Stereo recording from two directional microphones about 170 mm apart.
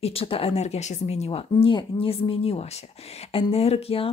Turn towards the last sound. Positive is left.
turn(degrees=35)  # may be behind; listen again after turning